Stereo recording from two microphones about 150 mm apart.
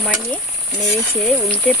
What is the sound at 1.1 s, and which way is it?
Speech, centre (ahead or behind).